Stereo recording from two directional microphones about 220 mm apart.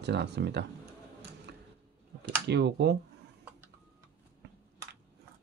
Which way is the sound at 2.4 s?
50° right (ahead or behind).